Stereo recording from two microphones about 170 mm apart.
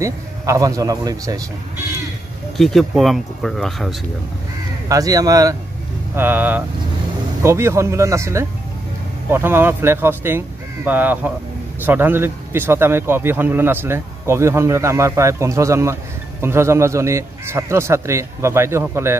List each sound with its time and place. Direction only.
0.0 s a man's voice: 20° right (ahead or behind)
2.5 s speech: centre (ahead or behind)
4.8 s a man's voice: 20° right (ahead or behind)